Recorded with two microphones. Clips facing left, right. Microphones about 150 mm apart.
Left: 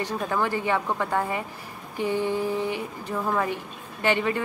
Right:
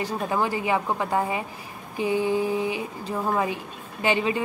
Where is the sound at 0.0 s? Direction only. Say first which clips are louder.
Right 1 dB; 15° right (ahead or behind).